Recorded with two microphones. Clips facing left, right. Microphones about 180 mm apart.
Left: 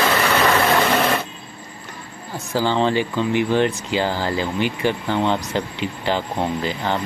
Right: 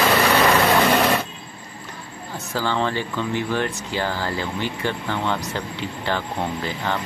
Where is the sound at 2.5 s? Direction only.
20° left (ahead or behind).